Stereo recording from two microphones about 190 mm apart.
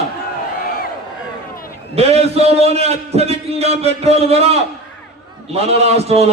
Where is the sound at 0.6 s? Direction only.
50° left (ahead or behind).